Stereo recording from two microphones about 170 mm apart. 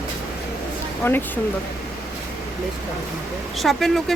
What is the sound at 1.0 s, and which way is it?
Speech, 15° left (ahead or behind).